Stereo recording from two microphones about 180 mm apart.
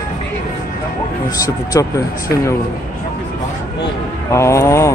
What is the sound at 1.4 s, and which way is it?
Speech, 20° left (ahead or behind).